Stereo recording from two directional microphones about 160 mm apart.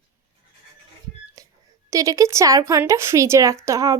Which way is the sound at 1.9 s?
20° right (ahead or behind).